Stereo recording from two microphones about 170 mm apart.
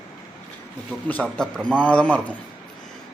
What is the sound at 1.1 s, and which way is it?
Speech, 5° left (ahead or behind).